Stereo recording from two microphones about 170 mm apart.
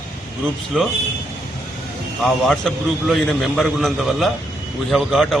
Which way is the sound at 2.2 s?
Centre (ahead or behind).